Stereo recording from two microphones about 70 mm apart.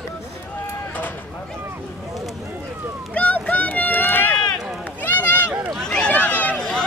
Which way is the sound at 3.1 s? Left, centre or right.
Left.